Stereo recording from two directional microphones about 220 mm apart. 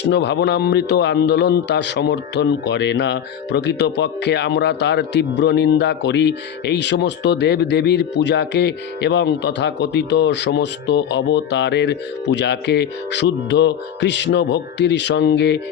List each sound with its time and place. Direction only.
0.0 s a man's voice: 50° left (ahead or behind)